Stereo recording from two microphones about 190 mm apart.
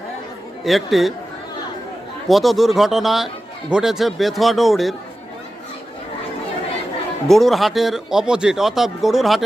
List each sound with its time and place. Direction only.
0.6 s speech: centre (ahead or behind)
2.2 s speech: centre (ahead or behind)
7.3 s speech: centre (ahead or behind)